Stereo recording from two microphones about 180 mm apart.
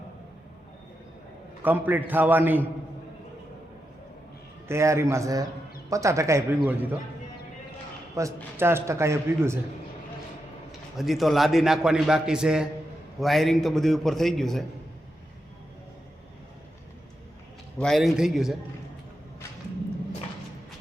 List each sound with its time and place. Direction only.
1.6 s a man's voice: 10° right (ahead or behind)
4.7 s a man's voice: 15° right (ahead or behind)
8.2 s a man's voice: 15° right (ahead or behind)
10.7 s a man's voice: centre (ahead or behind)
17.7 s a man's voice: centre (ahead or behind)